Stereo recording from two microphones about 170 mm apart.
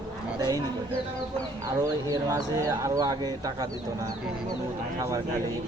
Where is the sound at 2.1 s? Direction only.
20° right (ahead or behind).